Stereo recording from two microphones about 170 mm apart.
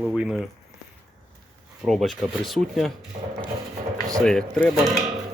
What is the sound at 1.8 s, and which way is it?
Speech, centre (ahead or behind).